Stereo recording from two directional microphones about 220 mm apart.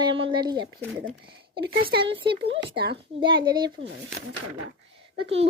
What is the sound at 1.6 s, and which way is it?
Speech, 45° right (ahead or behind).